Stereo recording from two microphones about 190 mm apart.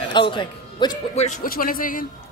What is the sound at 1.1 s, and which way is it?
Speech, 35° left (ahead or behind).